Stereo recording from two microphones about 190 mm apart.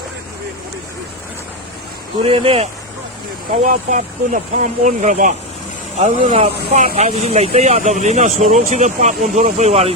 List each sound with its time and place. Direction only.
2.2 s speech: 30° right (ahead or behind)
3.6 s speech: 40° right (ahead or behind)